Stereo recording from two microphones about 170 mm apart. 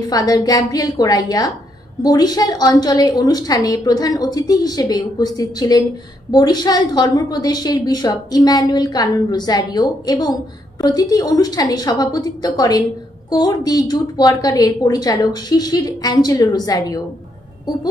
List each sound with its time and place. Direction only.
0.0 s a woman's voice: 20° left (ahead or behind)